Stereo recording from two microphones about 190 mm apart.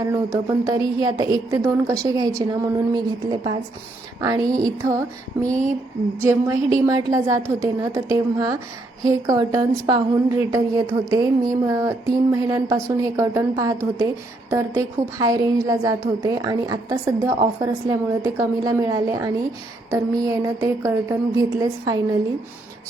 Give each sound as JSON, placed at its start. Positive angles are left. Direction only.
{"t": 0.0, "sound": "a woman's voice", "side_deg": -20}
{"t": 4.2, "sound": "a woman's voice", "side_deg": -20}
{"t": 6.1, "sound": "a woman's voice", "side_deg": -15}